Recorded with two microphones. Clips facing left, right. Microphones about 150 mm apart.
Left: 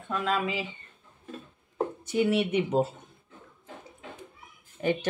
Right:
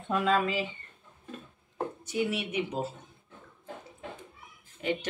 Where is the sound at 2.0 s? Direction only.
55° left (ahead or behind).